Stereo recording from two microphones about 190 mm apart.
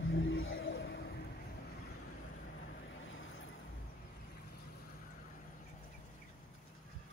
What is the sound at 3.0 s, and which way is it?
Vehicle, 90° left.